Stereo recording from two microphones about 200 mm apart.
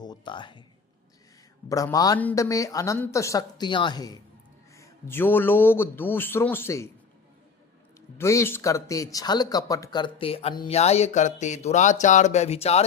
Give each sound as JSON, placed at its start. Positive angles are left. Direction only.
{"t": 0.0, "sound": "music", "side_deg": 20}
{"t": 1.7, "sound": "a man's voice", "side_deg": 15}
{"t": 8.2, "sound": "speech", "side_deg": 15}